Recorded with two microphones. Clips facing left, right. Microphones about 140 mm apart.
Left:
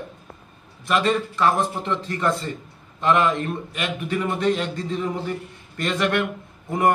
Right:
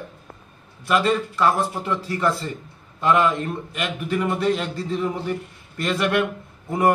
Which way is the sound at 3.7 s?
Centre (ahead or behind).